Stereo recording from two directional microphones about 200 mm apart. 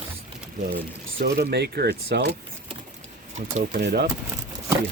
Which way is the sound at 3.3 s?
40° right (ahead or behind).